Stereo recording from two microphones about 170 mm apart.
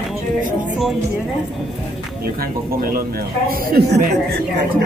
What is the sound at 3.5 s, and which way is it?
Speech, 65° right (ahead or behind).